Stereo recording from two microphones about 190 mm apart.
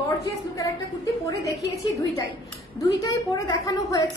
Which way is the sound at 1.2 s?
15° left (ahead or behind).